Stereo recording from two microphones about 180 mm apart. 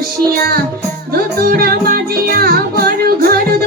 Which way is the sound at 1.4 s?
55° right (ahead or behind).